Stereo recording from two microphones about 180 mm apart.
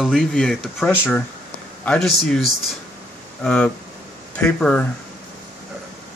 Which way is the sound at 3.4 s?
5° left (ahead or behind).